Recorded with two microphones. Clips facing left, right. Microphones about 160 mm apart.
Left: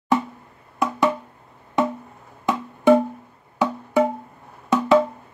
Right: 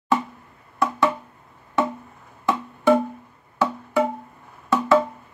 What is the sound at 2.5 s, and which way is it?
Music, 15° left (ahead or behind).